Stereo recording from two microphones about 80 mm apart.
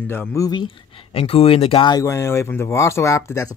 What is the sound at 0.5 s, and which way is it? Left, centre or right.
Speech, left.